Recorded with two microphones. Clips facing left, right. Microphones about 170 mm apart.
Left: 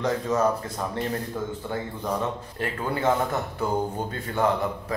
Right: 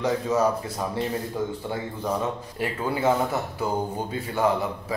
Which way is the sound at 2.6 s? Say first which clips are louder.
Right 2 dB; 10° right (ahead or behind).